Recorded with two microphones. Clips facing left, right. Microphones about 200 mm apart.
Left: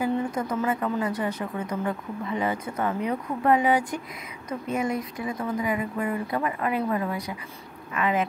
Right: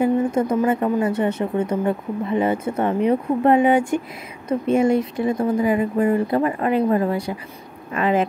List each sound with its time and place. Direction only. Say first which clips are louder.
0.3 s a woman's voice: right 8 dB; 25° right (ahead or behind)